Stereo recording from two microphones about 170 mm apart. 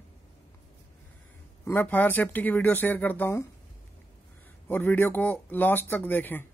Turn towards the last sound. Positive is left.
turn(degrees=10)  # may be behind; listen again after turning